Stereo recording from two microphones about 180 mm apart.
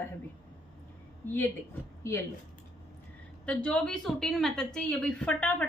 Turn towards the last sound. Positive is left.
turn(degrees=5)  # may be behind; listen again after turning